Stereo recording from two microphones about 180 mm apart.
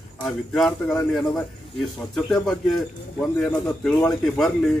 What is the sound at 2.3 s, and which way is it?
A man's voice, 5° left (ahead or behind).